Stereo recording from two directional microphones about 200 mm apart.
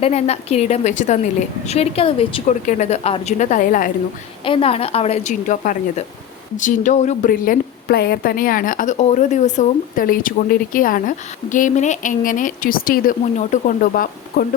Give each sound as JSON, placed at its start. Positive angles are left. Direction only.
{"t": 0.0, "sound": "a woman's voice", "side_deg": 35}
{"t": 4.4, "sound": "a woman's voice", "side_deg": 25}